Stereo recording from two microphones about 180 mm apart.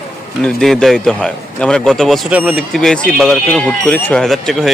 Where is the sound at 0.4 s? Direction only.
5° left (ahead or behind).